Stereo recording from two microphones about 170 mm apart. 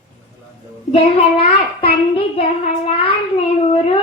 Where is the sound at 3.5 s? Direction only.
35° left (ahead or behind).